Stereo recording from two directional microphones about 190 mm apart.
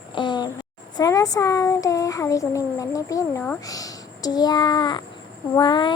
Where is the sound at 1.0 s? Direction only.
20° left (ahead or behind).